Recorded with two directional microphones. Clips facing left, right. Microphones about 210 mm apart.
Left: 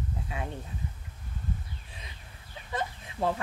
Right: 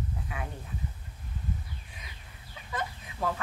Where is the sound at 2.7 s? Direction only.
30° left (ahead or behind).